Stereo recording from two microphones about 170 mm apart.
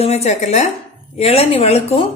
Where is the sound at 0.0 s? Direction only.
40° left (ahead or behind).